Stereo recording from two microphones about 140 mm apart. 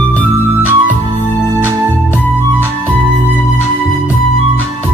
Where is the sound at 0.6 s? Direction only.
15° right (ahead or behind).